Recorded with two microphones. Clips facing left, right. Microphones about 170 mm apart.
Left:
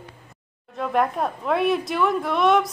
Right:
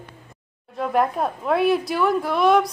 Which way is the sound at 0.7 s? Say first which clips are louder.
Right 1 dB; centre (ahead or behind).